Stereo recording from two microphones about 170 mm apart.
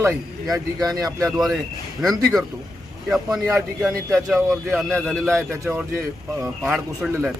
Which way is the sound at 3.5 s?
Centre (ahead or behind).